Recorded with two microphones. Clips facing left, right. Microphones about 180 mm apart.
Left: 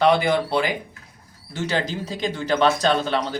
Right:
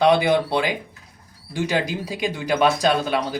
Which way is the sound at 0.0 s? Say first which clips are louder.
Right 1 dB; 15° right (ahead or behind).